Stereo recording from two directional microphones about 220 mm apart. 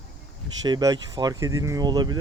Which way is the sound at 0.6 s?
20° right (ahead or behind).